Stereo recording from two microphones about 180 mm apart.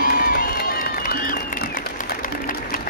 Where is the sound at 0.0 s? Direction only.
60° left (ahead or behind).